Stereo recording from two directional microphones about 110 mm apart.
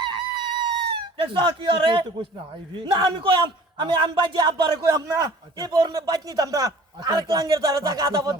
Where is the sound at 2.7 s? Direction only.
40° right (ahead or behind).